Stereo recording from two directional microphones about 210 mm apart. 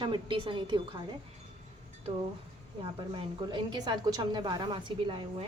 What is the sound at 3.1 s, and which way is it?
A woman's voice, 25° right (ahead or behind).